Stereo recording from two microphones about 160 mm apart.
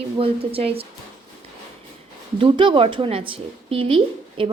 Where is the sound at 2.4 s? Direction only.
30° right (ahead or behind).